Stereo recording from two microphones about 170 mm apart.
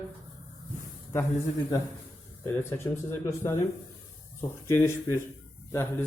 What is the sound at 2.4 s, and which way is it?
Speech, 15° left (ahead or behind).